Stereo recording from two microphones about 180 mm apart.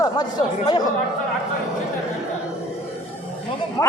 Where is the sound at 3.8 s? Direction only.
25° left (ahead or behind).